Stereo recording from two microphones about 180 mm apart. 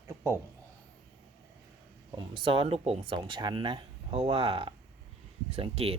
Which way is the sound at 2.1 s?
30° right (ahead or behind).